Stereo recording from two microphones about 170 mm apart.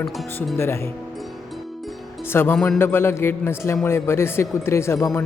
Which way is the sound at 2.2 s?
15° left (ahead or behind).